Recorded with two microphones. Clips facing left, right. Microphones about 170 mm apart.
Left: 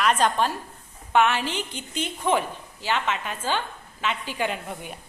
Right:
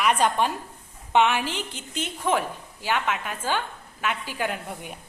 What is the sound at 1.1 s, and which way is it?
A woman's voice, 15° right (ahead or behind).